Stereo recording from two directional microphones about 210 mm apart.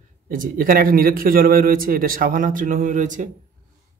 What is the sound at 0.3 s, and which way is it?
Speech, 40° right (ahead or behind).